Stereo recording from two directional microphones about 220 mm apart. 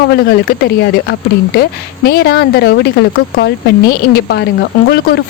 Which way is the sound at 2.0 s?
45° left (ahead or behind).